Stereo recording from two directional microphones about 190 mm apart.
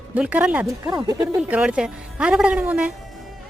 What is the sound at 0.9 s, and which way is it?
Speech, 20° right (ahead or behind).